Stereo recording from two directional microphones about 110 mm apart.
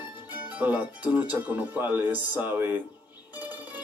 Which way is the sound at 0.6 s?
15° right (ahead or behind).